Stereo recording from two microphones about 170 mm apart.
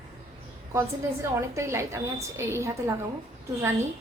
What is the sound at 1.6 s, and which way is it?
A woman's voice, 15° right (ahead or behind).